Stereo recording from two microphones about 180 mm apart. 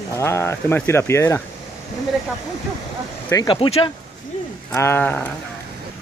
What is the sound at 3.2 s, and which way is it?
Speech, 20° left (ahead or behind).